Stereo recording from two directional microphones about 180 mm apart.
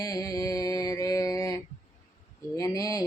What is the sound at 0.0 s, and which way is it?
Mantra, 20° left (ahead or behind).